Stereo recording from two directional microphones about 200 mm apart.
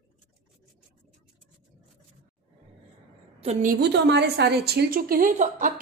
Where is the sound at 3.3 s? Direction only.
30° right (ahead or behind).